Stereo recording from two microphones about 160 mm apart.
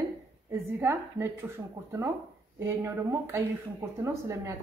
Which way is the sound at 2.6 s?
15° right (ahead or behind).